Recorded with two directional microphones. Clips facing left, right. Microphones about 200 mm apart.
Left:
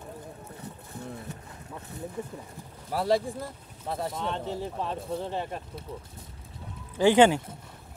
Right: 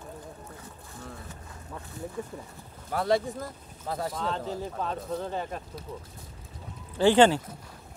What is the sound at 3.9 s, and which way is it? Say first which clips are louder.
Speech: even; 25° left (ahead or behind).